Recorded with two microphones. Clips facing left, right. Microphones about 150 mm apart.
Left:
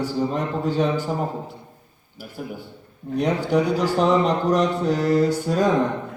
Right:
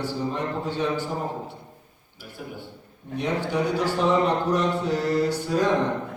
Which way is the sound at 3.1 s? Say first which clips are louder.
Left 5 dB; 45° left (ahead or behind).